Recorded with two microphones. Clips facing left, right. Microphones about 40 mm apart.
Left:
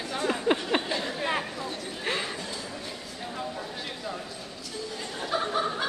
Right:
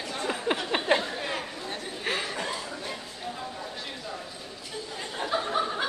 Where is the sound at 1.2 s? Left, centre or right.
Centre.